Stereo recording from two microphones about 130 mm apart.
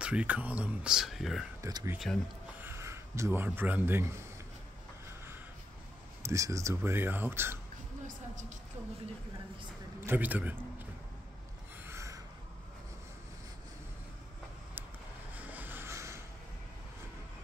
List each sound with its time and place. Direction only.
0.0 s speech: 10° right (ahead or behind)
1.6 s speech: 30° right (ahead or behind)
2.1 s speech: 10° left (ahead or behind)
2.6 s speech: 20° right (ahead or behind)
6.2 s speech: 25° right (ahead or behind)
9.9 s a man's voice: 15° right (ahead or behind)
11.8 s a sound: 20° right (ahead or behind)
15.3 s a sound: 15° right (ahead or behind)